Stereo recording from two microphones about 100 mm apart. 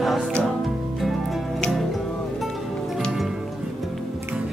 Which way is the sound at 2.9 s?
Centre (ahead or behind).